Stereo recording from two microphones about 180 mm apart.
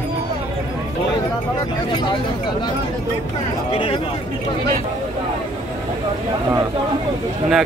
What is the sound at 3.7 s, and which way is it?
Speech, 30° left (ahead or behind).